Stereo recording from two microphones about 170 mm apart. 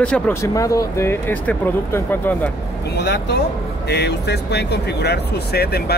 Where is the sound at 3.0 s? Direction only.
80° left.